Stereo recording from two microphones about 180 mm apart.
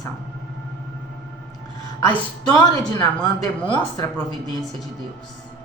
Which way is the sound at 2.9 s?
20° left (ahead or behind).